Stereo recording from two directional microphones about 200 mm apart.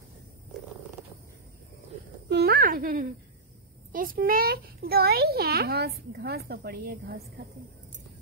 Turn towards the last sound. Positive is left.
turn(degrees=-50)  # may be behind; listen again after turning